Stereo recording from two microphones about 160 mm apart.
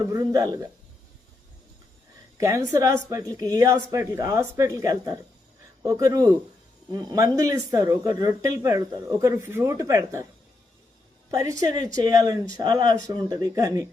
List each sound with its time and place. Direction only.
0.0 s speech: 20° right (ahead or behind)
2.4 s speech: 20° right (ahead or behind)
11.3 s speech: 20° right (ahead or behind)